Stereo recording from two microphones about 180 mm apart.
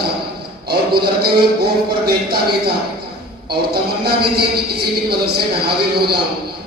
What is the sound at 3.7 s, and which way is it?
Speech, 60° right (ahead or behind).